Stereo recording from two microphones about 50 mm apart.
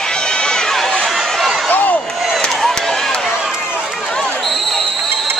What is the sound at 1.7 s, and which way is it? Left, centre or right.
Basketball bounce, left.